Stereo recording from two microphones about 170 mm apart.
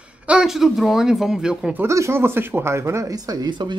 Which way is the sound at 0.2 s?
5° right (ahead or behind).